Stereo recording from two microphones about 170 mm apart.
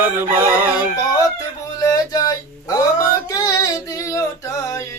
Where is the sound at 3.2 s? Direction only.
20° left (ahead or behind).